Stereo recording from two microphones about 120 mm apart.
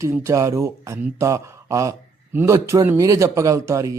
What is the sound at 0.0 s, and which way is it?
Speech, 25° right (ahead or behind).